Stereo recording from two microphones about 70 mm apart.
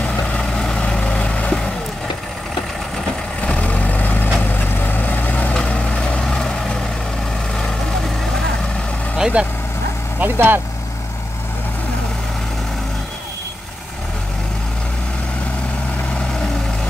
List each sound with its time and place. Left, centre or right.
0.0 s vehicle: centre
3.4 s vehicle: centre
9.1 s speech: centre
10.2 s speech: right